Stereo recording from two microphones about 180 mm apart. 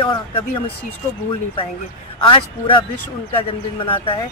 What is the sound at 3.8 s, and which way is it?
Speech, 30° left (ahead or behind).